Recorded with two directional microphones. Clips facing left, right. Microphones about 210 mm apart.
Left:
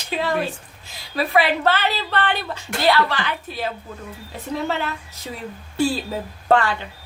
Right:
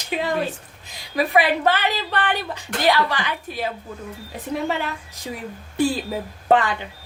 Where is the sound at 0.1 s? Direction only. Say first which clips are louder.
Even; 15° right (ahead or behind).